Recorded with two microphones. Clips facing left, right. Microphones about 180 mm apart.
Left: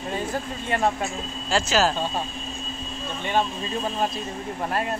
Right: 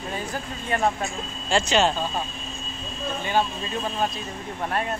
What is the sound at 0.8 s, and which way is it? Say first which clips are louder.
Speech: left 1 dB; centre (ahead or behind).